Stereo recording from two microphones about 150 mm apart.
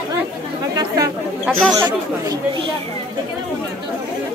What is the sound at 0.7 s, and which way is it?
Speech, 25° right (ahead or behind).